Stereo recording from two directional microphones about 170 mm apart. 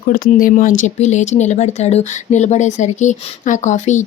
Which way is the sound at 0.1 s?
55° left (ahead or behind).